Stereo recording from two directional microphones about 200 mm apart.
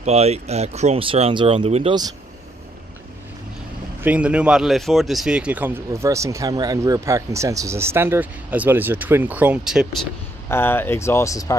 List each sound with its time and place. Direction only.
0.0 s speech: 30° right (ahead or behind)
4.0 s speech: 5° right (ahead or behind)
10.5 s speech: 10° left (ahead or behind)